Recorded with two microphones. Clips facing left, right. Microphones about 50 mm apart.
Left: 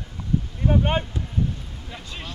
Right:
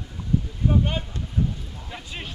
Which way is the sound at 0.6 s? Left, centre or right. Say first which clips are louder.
Left 3 dB; left.